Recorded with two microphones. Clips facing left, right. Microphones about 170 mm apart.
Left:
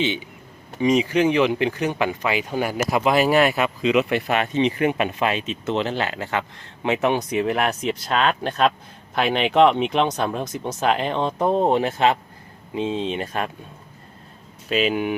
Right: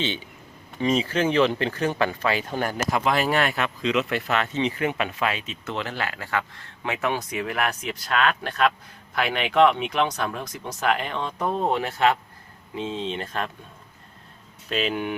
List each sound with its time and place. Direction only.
0.0 s speech: 15° left (ahead or behind)
14.7 s speech: 5° left (ahead or behind)